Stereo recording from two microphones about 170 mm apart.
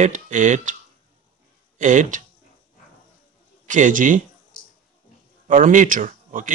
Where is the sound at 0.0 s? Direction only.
45° right (ahead or behind).